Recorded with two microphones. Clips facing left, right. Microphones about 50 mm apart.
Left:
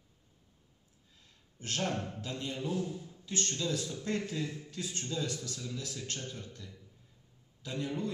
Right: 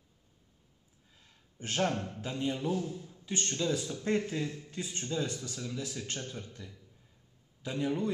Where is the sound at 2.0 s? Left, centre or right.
Centre.